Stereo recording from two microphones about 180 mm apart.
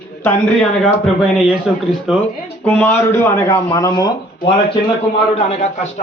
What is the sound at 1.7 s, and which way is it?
Speech, centre (ahead or behind).